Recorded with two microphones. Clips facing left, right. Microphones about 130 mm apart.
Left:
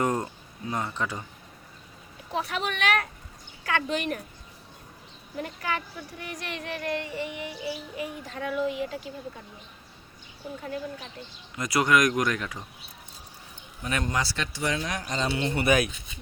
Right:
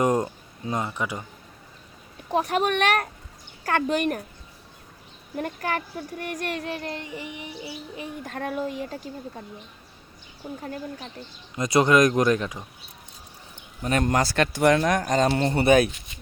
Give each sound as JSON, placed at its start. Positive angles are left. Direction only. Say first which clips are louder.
{"t": 0.0, "sound": "speech", "louder": "right 5 dB", "side_deg": -20}
{"t": 2.3, "sound": "speech", "louder": "right 7 dB", "side_deg": -45}
{"t": 5.4, "sound": "speech", "louder": "right 3 dB", "side_deg": -45}
{"t": 8.3, "sound": "speech", "louder": "even", "side_deg": -50}
{"t": 11.5, "sound": "speech", "louder": "right 5 dB", "side_deg": -25}
{"t": 13.8, "sound": "speech", "louder": "right 6 dB", "side_deg": -45}
{"t": 15.6, "sound": "speech", "louder": "right 6 dB", "side_deg": -30}